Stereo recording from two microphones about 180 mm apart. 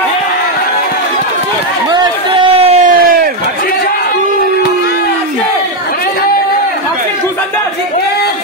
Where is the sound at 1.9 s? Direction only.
25° right (ahead or behind).